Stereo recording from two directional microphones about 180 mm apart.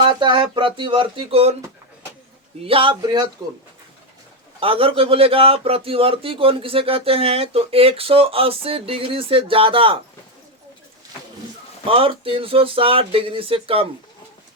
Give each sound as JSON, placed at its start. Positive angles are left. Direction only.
{"t": 0.0, "sound": "speech", "side_deg": -25}
{"t": 2.6, "sound": "a man's voice", "side_deg": -30}
{"t": 4.6, "sound": "a man's voice", "side_deg": -30}
{"t": 11.9, "sound": "a man's voice", "side_deg": -30}